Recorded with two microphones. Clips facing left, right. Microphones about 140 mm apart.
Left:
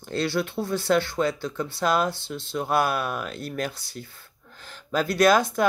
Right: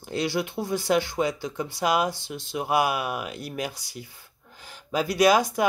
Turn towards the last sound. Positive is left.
turn(degrees=-10)  # may be behind; listen again after turning